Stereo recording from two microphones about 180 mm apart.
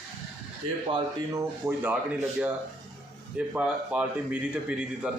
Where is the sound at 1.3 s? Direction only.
10° right (ahead or behind).